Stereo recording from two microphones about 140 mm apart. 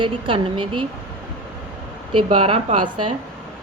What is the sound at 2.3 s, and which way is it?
Speech, 45° right (ahead or behind).